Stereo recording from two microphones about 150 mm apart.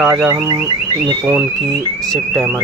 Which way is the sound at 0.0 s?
5° right (ahead or behind).